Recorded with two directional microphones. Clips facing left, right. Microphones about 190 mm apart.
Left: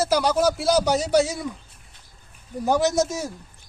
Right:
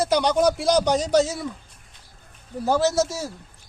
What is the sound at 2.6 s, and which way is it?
Speech, 15° left (ahead or behind).